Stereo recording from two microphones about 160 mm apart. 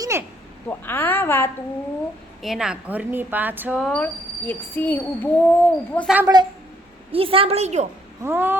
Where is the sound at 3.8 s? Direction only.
5° left (ahead or behind).